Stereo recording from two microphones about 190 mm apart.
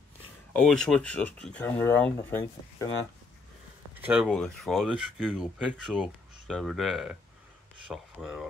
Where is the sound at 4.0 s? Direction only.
5° right (ahead or behind).